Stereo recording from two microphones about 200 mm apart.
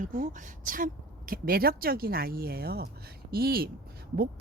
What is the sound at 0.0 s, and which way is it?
A woman's voice, 40° right (ahead or behind).